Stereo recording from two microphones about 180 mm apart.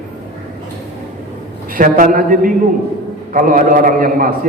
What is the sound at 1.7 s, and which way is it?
A man's voice, 50° right (ahead or behind).